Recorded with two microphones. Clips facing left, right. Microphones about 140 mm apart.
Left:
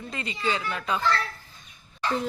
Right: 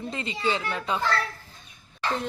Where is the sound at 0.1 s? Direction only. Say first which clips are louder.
Right 1 dB; 25° right (ahead or behind).